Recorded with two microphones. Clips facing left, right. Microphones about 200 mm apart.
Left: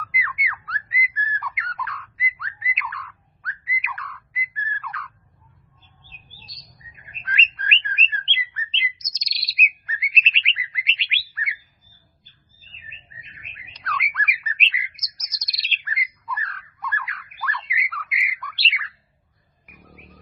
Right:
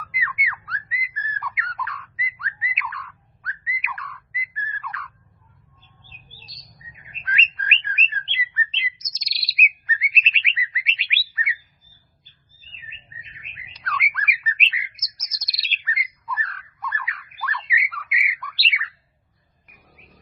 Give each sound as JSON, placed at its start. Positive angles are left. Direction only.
{"t": 0.0, "sound": "a sound", "side_deg": 0}
{"t": 6.6, "sound": "bird", "side_deg": 0}
{"t": 13.7, "sound": "bird", "side_deg": 0}